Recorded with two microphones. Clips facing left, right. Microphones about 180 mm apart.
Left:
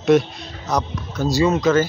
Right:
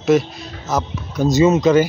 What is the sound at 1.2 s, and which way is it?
Speech, 20° right (ahead or behind).